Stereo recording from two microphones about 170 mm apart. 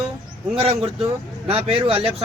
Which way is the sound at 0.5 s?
35° right (ahead or behind).